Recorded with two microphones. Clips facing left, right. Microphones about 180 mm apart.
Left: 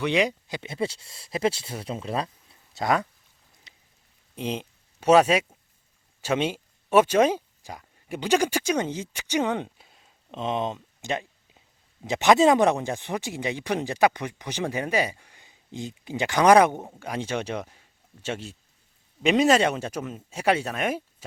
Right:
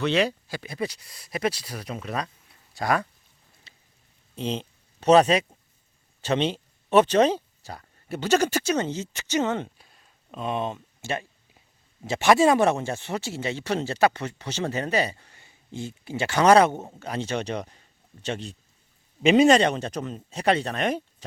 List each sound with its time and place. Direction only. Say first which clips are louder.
0.0 s speech: even; 15° left (ahead or behind)
3.7 s a sound: even; 15° left (ahead or behind)
4.4 s speech: right 1 dB; 10° left (ahead or behind)